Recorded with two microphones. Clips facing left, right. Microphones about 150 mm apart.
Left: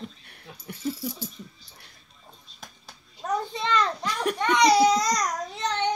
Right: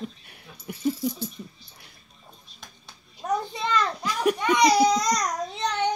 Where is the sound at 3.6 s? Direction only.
10° right (ahead or behind).